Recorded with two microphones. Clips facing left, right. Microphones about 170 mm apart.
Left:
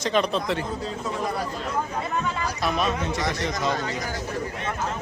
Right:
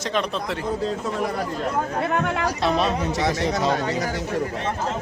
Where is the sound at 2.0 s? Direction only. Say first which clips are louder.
Right 5 dB; 65° right (ahead or behind).